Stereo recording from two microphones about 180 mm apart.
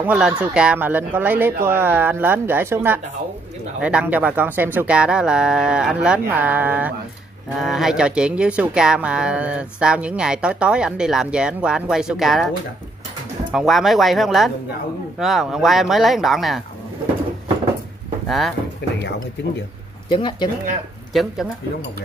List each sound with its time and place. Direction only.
0.0 s speech: 5° right (ahead or behind)
13.5 s speech: centre (ahead or behind)
18.8 s speech: 75° left (ahead or behind)
20.1 s speech: 25° left (ahead or behind)
21.1 s speech: centre (ahead or behind)